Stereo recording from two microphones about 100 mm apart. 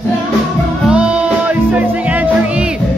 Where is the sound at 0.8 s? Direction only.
10° right (ahead or behind).